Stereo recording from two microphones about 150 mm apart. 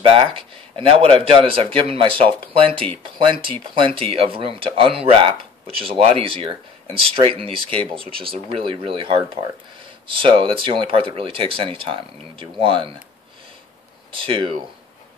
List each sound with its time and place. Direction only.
0.0 s speech: 40° right (ahead or behind)
14.1 s speech: 35° right (ahead or behind)